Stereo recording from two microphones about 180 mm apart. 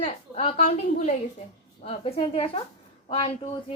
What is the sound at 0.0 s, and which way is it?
A woman's voice, 30° left (ahead or behind).